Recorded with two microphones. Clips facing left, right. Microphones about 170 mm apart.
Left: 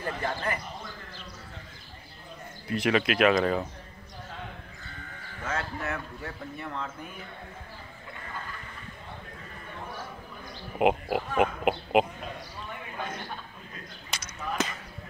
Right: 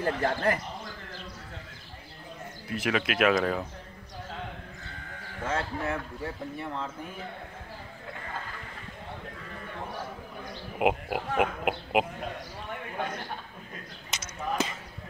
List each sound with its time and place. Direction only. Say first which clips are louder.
0.0 s speech: right 5 dB; 70° right (ahead or behind)
2.7 s speech: left 3 dB; 5° right (ahead or behind)
5.4 s speech: right 2 dB; 30° right (ahead or behind)
11.1 s speech: left 2 dB; 45° left (ahead or behind)
11.6 s speech: left 3 dB; 5° right (ahead or behind)
13.0 s a man's voice: right 3 dB; 65° right (ahead or behind)
14.1 s a sound: right 1 dB; 25° right (ahead or behind)